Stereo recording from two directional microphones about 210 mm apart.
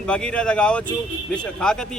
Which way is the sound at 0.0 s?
5° left (ahead or behind).